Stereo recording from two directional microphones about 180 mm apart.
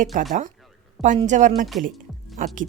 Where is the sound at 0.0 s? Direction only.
50° right (ahead or behind).